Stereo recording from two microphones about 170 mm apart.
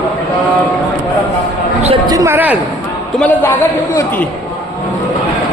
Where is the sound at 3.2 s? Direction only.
10° left (ahead or behind).